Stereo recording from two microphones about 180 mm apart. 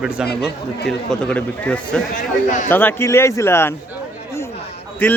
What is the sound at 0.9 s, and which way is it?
A man's voice, 5° left (ahead or behind).